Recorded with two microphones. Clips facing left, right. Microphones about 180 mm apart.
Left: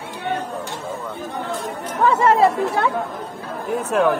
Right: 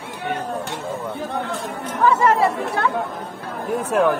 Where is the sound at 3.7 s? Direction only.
Centre (ahead or behind).